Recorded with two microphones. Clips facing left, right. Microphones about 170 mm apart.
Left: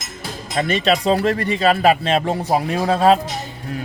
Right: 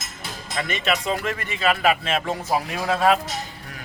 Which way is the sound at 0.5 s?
35° left (ahead or behind).